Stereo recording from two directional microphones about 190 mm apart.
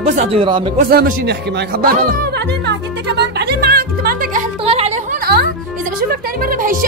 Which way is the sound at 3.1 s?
60° right (ahead or behind).